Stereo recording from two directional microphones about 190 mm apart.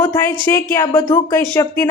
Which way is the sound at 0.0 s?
10° left (ahead or behind).